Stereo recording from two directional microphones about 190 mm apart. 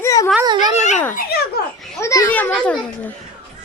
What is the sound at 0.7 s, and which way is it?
Speech, 40° left (ahead or behind).